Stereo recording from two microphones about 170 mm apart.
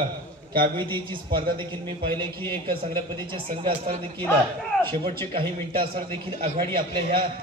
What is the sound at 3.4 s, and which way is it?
A man's voice, 35° right (ahead or behind).